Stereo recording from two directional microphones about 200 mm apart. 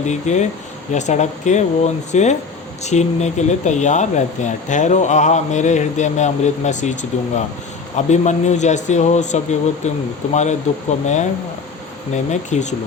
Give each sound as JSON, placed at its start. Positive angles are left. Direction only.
{"t": 0.0, "sound": "speech", "side_deg": 35}